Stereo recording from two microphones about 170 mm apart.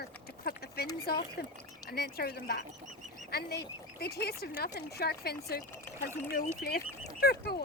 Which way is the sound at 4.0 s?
65° left (ahead or behind).